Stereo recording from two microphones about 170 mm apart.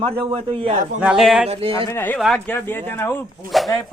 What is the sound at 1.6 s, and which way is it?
Speech, 30° right (ahead or behind).